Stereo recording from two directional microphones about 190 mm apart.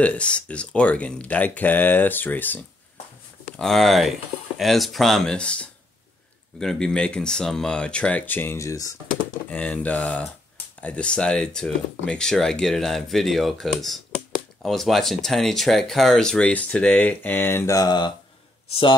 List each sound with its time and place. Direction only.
0.0 s speech: 5° left (ahead or behind); by 18.9 s 30° left (ahead or behind)